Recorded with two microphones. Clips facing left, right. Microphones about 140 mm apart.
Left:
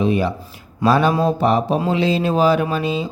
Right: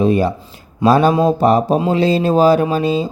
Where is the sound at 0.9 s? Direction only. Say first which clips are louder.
Right 4 dB; 40° right (ahead or behind).